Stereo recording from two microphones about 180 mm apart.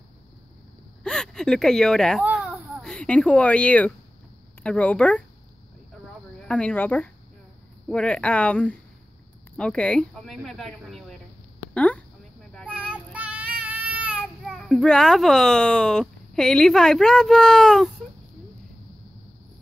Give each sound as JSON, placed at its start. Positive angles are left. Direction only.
{"t": 1.0, "sound": "speech", "side_deg": 5}
{"t": 2.2, "sound": "a sound", "side_deg": -10}
{"t": 4.6, "sound": "speech", "side_deg": 5}
{"t": 6.4, "sound": "speech", "side_deg": 5}
{"t": 11.7, "sound": "a sound", "side_deg": 5}
{"t": 12.5, "sound": "child singing", "side_deg": 5}
{"t": 13.1, "sound": "speech", "side_deg": -10}